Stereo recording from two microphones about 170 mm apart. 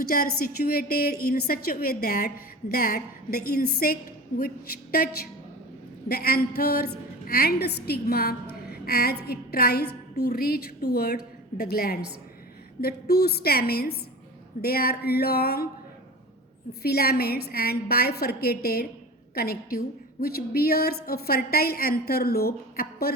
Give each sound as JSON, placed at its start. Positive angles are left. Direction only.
{"t": 0.0, "sound": "a woman's voice", "side_deg": 60}
{"t": 16.8, "sound": "a woman's voice", "side_deg": 65}